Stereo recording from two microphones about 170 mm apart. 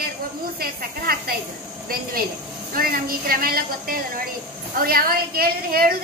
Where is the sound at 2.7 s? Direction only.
60° right (ahead or behind).